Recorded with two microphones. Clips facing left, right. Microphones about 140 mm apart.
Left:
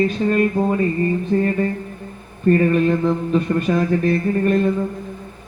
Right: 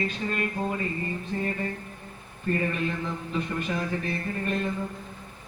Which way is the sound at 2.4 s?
60° left (ahead or behind).